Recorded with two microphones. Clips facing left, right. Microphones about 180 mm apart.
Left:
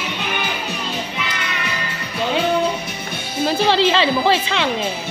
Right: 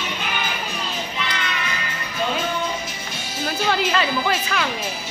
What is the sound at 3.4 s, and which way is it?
Speech, 30° left (ahead or behind).